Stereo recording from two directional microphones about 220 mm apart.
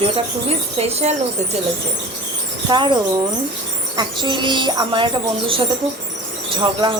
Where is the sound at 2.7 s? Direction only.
20° right (ahead or behind).